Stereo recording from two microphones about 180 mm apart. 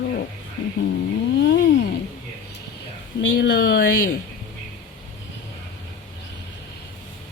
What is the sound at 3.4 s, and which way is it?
Speech, 60° left (ahead or behind).